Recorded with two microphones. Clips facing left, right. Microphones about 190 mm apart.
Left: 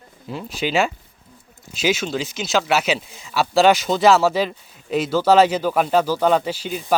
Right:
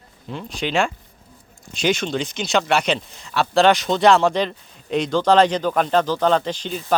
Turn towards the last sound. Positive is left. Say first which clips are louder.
# left 1 dB
turn(degrees=5)  # may be behind; listen again after turning